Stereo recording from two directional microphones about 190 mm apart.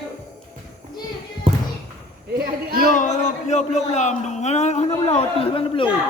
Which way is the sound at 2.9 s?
40° left (ahead or behind).